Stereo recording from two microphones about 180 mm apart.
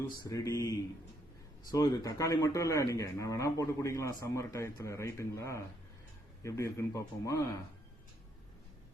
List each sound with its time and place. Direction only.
0.2 s speech: 20° left (ahead or behind)